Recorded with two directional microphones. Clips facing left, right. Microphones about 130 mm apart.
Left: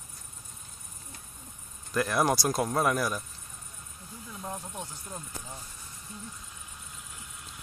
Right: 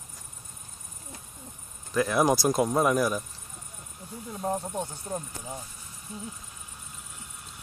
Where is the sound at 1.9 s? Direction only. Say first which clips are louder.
Right 3 dB; centre (ahead or behind).